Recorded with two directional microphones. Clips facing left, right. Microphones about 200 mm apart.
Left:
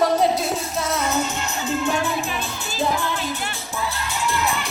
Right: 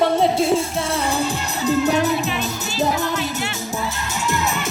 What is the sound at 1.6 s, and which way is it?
Music, 40° right (ahead or behind).